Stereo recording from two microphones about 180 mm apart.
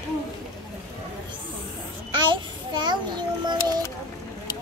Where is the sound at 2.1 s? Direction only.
25° right (ahead or behind).